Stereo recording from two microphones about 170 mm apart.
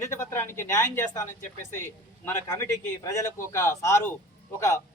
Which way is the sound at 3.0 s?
20° left (ahead or behind).